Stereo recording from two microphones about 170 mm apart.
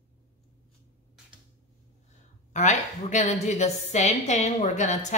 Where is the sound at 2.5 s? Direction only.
45° left (ahead or behind).